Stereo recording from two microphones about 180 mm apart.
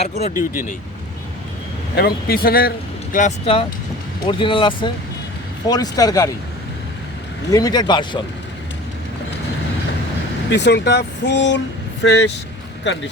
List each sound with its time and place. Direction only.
0.0 s speech: 35° left (ahead or behind)
2.0 s speech: 60° left (ahead or behind)
3.4 s speech: 30° left (ahead or behind)
7.5 s speech: 20° left (ahead or behind)
10.5 s speech: 75° left (ahead or behind)